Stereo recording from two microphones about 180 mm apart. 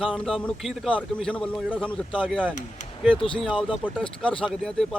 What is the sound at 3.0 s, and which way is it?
Speech, centre (ahead or behind).